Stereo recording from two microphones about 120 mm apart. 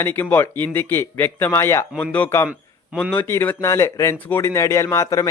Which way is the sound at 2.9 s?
5° left (ahead or behind).